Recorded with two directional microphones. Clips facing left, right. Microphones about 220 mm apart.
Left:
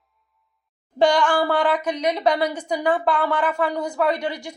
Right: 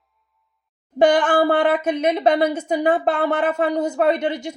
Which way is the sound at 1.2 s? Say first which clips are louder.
Right 3 dB; 20° right (ahead or behind).